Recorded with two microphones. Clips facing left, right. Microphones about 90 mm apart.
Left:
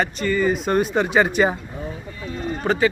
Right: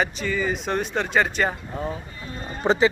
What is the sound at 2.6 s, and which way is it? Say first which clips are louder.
Speech: right 1 dB; 20° right (ahead or behind).